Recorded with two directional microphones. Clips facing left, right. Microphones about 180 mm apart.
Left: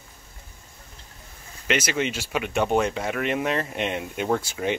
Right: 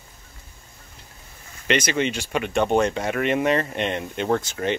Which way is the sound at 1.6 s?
5° left (ahead or behind).